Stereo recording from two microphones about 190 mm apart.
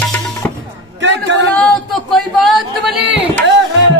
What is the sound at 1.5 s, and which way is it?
Speech, centre (ahead or behind).